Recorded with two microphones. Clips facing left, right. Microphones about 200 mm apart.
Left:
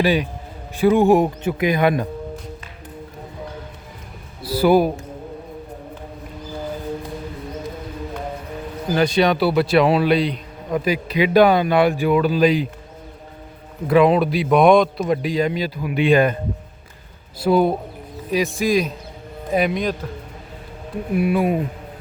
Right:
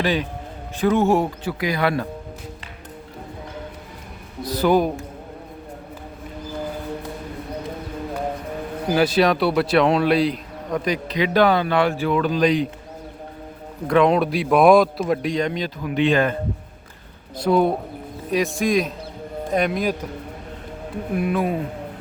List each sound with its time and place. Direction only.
0.0 s speech: 15° left (ahead or behind)
4.4 s speech: 10° left (ahead or behind)
8.9 s speech: 5° right (ahead or behind)
13.8 s speech: 5° left (ahead or behind)
17.4 s speech: centre (ahead or behind)
21.2 s speech: 10° left (ahead or behind)